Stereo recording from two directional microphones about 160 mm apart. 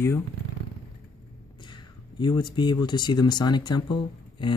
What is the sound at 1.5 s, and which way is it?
Speech, 30° left (ahead or behind).